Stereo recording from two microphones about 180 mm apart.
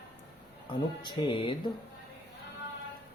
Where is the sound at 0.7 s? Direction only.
25° left (ahead or behind).